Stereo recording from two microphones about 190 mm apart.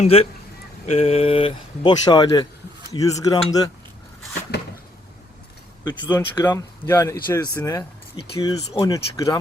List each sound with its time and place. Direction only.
0.0 s speech: 30° left (ahead or behind)
5.8 s speech: 25° left (ahead or behind)